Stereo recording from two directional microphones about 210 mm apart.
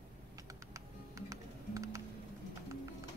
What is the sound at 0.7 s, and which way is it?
Music, 15° right (ahead or behind).